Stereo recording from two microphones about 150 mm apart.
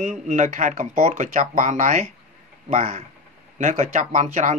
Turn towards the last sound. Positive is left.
turn(degrees=-55)  # may be behind; listen again after turning